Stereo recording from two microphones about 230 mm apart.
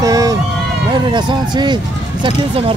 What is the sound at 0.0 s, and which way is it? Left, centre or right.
Run, centre.